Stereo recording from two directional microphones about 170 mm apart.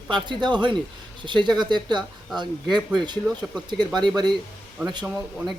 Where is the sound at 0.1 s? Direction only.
25° right (ahead or behind).